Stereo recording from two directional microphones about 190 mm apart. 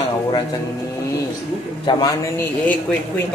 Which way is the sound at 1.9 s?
25° left (ahead or behind).